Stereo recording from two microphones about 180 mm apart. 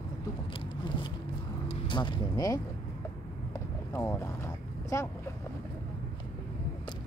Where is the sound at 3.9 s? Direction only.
15° left (ahead or behind).